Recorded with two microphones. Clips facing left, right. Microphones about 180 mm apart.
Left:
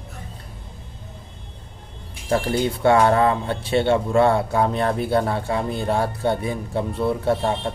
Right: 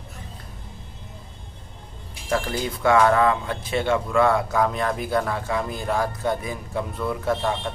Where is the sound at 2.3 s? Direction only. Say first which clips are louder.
Left 4 dB; 30° left (ahead or behind).